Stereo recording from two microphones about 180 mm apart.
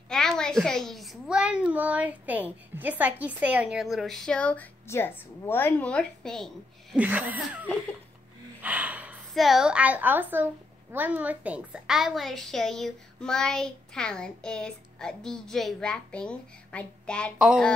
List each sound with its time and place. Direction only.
0.1 s a woman's voice: 5° left (ahead or behind)